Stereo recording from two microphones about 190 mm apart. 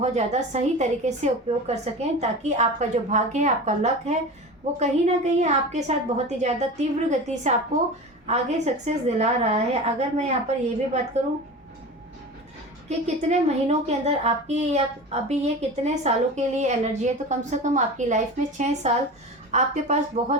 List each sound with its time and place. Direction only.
0.0 s a woman's voice: 35° right (ahead or behind)
12.9 s a woman's voice: 35° right (ahead or behind)